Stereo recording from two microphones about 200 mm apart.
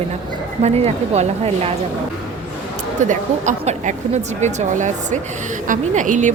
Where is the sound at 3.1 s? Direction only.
35° right (ahead or behind).